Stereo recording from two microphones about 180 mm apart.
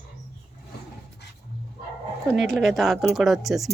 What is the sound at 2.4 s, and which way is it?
A woman's voice, centre (ahead or behind).